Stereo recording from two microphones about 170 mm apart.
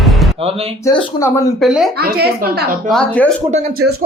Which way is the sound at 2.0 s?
65° right (ahead or behind).